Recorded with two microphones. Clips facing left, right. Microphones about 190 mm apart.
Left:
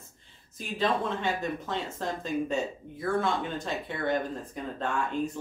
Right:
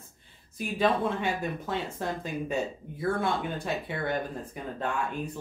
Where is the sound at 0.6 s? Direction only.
10° right (ahead or behind).